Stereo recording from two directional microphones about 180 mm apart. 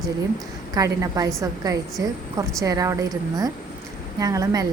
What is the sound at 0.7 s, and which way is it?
Speech, 20° right (ahead or behind).